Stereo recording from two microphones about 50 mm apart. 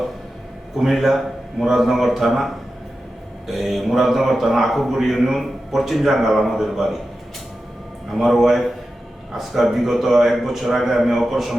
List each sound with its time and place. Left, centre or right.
0.8 s a man's voice: centre
8.1 s a man's voice: centre